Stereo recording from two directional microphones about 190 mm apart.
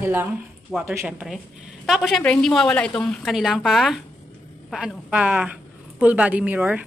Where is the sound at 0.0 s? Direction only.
10° right (ahead or behind).